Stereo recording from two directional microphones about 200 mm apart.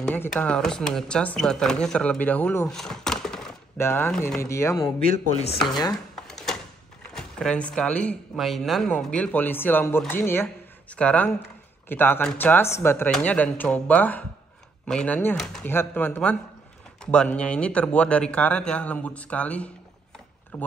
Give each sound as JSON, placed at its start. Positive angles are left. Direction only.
{"t": 0.0, "sound": "speech", "side_deg": 5}
{"t": 2.8, "sound": "a sound", "side_deg": 0}
{"t": 3.8, "sound": "speech", "side_deg": 10}
{"t": 5.4, "sound": "speech", "side_deg": 25}
{"t": 6.2, "sound": "a sound", "side_deg": 0}
{"t": 7.2, "sound": "speech", "side_deg": 5}